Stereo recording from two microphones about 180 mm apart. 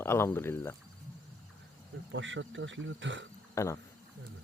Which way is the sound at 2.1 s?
90° right.